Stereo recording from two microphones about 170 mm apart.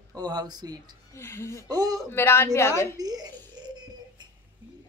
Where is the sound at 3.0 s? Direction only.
20° right (ahead or behind).